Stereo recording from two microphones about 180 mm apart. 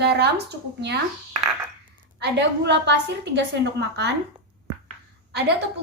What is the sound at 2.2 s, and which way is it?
Speech, 75° right (ahead or behind).